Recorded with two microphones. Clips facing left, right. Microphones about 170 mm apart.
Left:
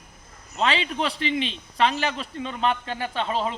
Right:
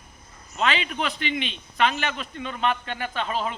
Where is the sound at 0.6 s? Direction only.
30° left (ahead or behind).